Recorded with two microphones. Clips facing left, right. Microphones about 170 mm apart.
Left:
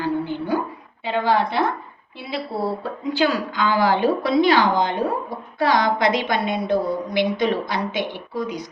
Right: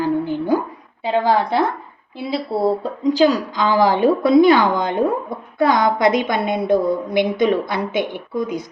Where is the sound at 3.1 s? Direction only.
40° right (ahead or behind).